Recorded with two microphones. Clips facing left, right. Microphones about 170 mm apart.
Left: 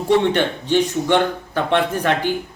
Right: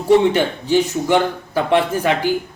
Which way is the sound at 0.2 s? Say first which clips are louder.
Right 2 dB; 10° right (ahead or behind).